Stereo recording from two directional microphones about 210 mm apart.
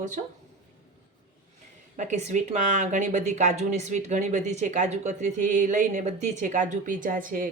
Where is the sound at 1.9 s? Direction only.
35° right (ahead or behind).